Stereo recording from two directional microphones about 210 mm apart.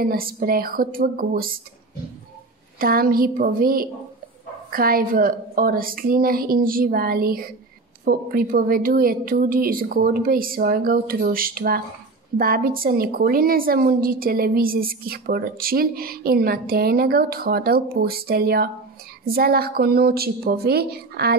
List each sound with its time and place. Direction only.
0.0 s a woman's voice: 45° right (ahead or behind)
2.8 s a woman's voice: 45° right (ahead or behind)